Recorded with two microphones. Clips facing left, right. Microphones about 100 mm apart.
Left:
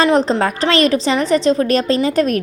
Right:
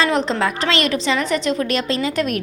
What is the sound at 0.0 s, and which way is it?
A woman's voice, 35° left (ahead or behind).